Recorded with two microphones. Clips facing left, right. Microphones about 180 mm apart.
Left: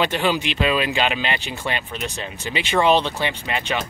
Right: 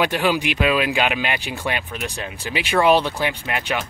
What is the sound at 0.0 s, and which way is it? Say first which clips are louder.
Speech: right 1 dB; 10° right (ahead or behind).